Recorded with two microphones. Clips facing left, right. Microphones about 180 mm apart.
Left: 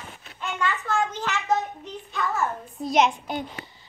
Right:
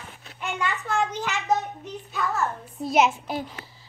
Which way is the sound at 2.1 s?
5° right (ahead or behind).